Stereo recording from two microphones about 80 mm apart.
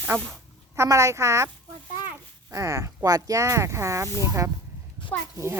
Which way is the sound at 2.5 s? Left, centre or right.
Right.